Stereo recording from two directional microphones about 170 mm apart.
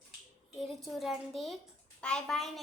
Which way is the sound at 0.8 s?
Centre (ahead or behind).